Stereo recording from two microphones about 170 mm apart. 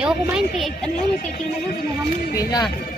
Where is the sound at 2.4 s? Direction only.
25° left (ahead or behind).